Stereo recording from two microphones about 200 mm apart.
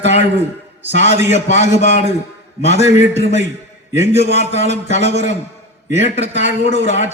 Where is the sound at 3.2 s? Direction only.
35° left (ahead or behind).